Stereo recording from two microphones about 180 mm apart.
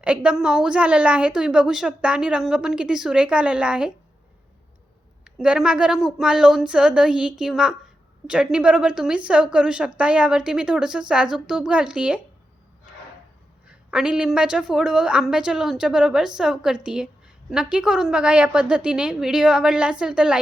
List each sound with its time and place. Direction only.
0.0 s a woman's voice: 5° right (ahead or behind)
5.2 s a woman's voice: 5° right (ahead or behind)
13.7 s a woman's voice: 5° right (ahead or behind)